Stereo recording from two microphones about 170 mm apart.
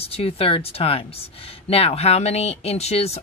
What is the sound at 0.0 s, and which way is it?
Speech, 35° left (ahead or behind).